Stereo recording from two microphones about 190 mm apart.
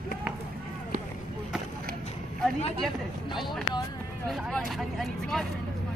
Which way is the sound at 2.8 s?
Centre (ahead or behind).